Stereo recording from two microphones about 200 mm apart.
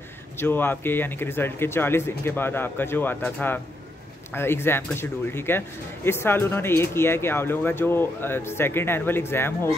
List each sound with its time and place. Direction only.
0.4 s speech: 10° left (ahead or behind)